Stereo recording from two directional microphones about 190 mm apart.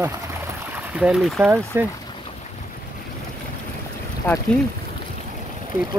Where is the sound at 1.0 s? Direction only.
Centre (ahead or behind).